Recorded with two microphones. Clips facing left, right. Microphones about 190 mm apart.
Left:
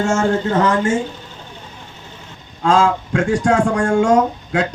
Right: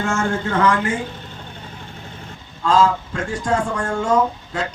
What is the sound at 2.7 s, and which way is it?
Speech, 80° left.